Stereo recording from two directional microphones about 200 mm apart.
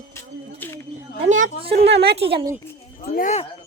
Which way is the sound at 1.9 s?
55° right (ahead or behind).